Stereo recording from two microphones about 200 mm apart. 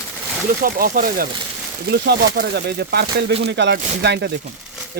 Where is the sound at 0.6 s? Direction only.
45° right (ahead or behind).